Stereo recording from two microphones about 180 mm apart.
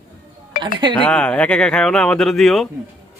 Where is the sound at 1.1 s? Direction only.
5° left (ahead or behind).